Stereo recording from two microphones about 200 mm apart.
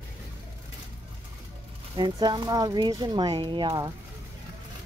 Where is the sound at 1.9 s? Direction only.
20° right (ahead or behind).